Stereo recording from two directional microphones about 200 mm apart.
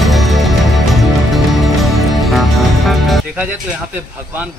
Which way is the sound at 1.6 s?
Centre (ahead or behind).